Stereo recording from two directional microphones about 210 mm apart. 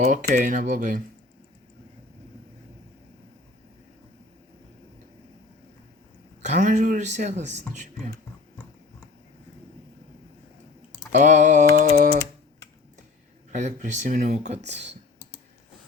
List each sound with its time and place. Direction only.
0.0 s speech: 35° right (ahead or behind)
6.4 s speech: 35° right (ahead or behind)
11.1 s speech: 35° right (ahead or behind)
13.5 s speech: 35° right (ahead or behind)